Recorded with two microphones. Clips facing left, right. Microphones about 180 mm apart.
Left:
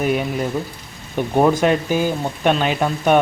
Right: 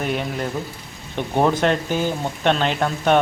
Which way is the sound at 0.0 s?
10° left (ahead or behind).